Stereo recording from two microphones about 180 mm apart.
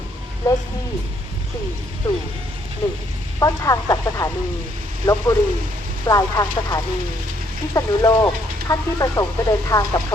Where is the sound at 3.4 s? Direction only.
20° left (ahead or behind).